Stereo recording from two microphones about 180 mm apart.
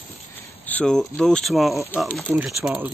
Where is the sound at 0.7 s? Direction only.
5° left (ahead or behind).